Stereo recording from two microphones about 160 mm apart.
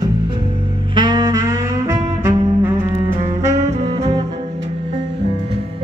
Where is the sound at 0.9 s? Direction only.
25° right (ahead or behind).